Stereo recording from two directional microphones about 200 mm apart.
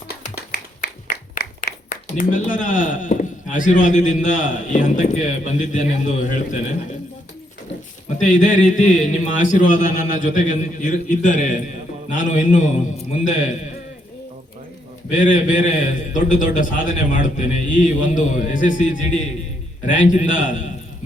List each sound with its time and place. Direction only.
0.5 s a sound: 50° left (ahead or behind)
1.9 s speech: 40° left (ahead or behind)
8.2 s speech: 40° left (ahead or behind)
15.1 s speech: 40° left (ahead or behind)